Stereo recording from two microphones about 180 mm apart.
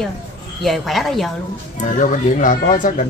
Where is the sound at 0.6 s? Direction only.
Centre (ahead or behind).